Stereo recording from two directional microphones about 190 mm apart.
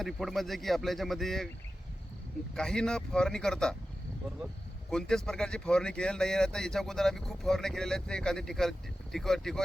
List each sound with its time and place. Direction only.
0.0 s speech: centre (ahead or behind)
2.6 s speech: 5° left (ahead or behind)
4.9 s speech: 5° left (ahead or behind)